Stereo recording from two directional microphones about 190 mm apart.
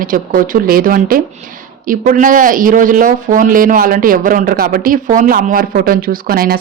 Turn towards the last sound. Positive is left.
turn(degrees=-50)  # may be behind; listen again after turning